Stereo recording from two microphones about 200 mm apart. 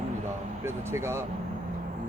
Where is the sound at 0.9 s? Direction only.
15° right (ahead or behind).